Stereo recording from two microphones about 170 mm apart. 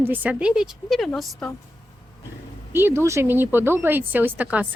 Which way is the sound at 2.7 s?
15° right (ahead or behind).